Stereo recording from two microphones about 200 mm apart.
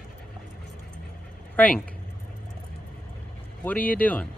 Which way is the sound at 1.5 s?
5° left (ahead or behind).